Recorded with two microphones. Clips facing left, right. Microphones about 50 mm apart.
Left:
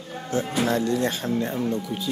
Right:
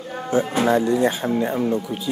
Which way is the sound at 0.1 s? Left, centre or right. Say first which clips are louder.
Right 5 dB; centre.